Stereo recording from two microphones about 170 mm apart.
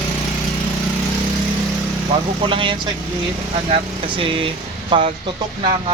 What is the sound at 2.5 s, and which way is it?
Speech, 30° right (ahead or behind).